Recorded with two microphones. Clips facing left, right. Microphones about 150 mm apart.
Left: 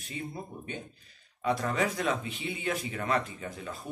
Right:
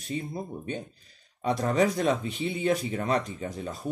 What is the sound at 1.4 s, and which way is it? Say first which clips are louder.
Speech: right 4 dB; 35° right (ahead or behind).